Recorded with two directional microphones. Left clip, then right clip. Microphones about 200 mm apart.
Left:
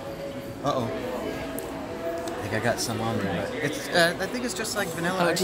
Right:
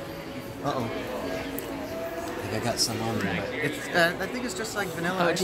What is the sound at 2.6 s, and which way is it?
Speech, 10° left (ahead or behind).